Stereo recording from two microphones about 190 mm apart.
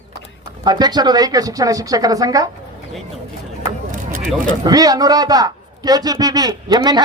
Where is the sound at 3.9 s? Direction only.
45° right (ahead or behind).